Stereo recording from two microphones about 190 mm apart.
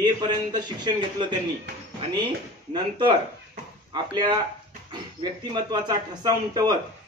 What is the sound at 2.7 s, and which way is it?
A man's voice, 25° right (ahead or behind).